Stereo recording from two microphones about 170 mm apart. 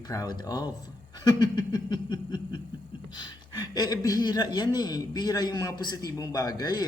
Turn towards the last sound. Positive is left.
turn(degrees=20)  # may be behind; listen again after turning